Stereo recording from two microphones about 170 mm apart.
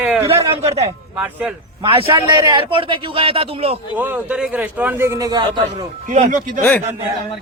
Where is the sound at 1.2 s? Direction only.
10° right (ahead or behind).